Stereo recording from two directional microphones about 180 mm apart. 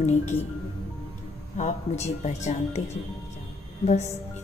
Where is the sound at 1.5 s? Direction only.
40° left (ahead or behind).